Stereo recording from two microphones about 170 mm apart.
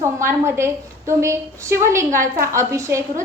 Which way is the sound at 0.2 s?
15° right (ahead or behind).